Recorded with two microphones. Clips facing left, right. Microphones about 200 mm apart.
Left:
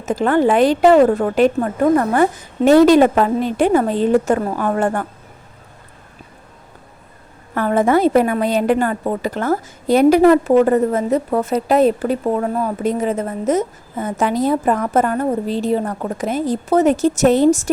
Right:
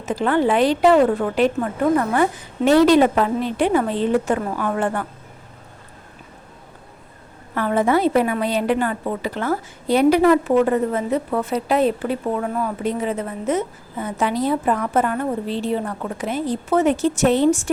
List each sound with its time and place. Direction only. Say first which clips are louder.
0.0 s a woman's voice: left 4 dB; 45° left (ahead or behind)
7.5 s a woman's voice: left 3 dB; 45° left (ahead or behind)